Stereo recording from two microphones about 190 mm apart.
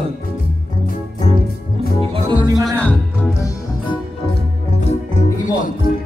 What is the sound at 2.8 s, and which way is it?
Music, 10° left (ahead or behind).